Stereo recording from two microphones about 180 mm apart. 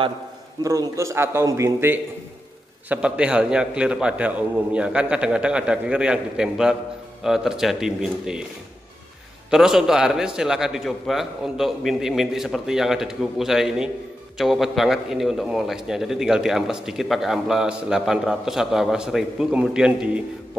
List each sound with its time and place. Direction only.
0.7 s a man's voice: 15° right (ahead or behind)
9.5 s a man's voice: 5° right (ahead or behind)